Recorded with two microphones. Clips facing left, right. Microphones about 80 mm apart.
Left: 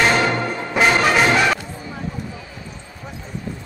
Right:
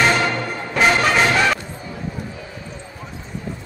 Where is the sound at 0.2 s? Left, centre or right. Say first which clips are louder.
Left 2 dB; left.